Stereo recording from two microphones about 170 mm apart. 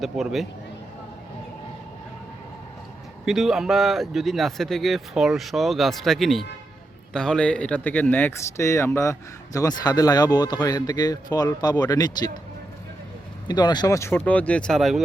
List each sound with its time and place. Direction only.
0.0 s speech: centre (ahead or behind)
3.2 s speech: centre (ahead or behind); by 12.3 s 25° left (ahead or behind)
13.5 s speech: 25° left (ahead or behind); by 15.0 s centre (ahead or behind)